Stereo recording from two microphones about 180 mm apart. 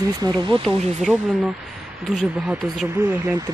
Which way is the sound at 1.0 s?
Centre (ahead or behind).